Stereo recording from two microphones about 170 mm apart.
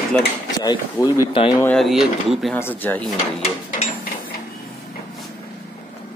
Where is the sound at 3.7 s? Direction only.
50° left (ahead or behind).